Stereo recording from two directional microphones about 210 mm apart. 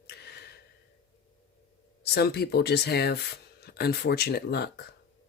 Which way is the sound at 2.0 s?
50° left (ahead or behind).